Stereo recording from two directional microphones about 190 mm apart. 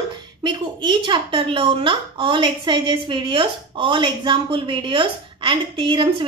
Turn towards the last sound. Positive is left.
turn(degrees=-25)  # may be behind; listen again after turning